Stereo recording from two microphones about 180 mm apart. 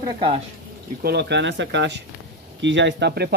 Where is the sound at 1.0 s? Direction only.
65° right (ahead or behind).